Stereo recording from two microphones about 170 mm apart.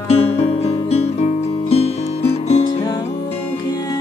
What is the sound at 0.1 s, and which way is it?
Music, 40° left (ahead or behind).